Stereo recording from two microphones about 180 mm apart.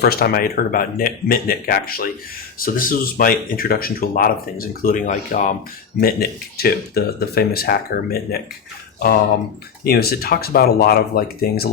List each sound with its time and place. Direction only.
0.0 s speech: 60° left (ahead or behind); by 5.5 s 45° left (ahead or behind)
6.0 s speech: 55° left (ahead or behind)
9.8 s speech: 60° left (ahead or behind)